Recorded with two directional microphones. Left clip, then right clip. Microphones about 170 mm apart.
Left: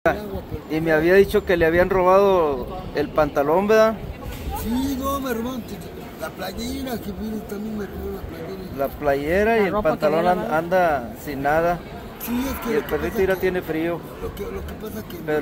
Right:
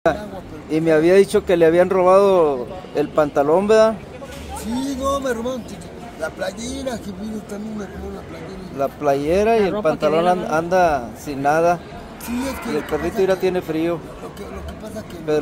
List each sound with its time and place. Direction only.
0.7 s speech: 20° right (ahead or behind)
4.7 s vehicle: 25° right (ahead or behind)
6.2 s speech: 25° right (ahead or behind)
8.7 s speech: 20° right (ahead or behind)
12.3 s speech: 35° right (ahead or behind)